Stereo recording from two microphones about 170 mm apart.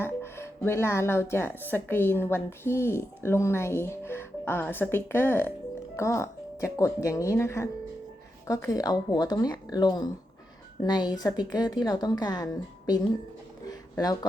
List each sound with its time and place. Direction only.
0.0 s speech: 15° left (ahead or behind)
14.0 s speech: 25° left (ahead or behind)